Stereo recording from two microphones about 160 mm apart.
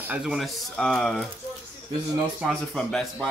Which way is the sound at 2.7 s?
Centre (ahead or behind).